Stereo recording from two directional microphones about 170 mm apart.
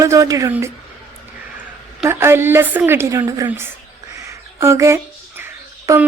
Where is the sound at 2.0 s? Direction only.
15° right (ahead or behind).